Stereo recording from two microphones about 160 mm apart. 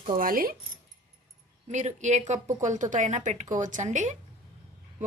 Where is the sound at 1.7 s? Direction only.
45° right (ahead or behind).